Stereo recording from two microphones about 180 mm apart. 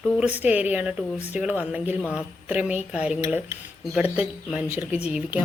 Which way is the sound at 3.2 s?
15° right (ahead or behind).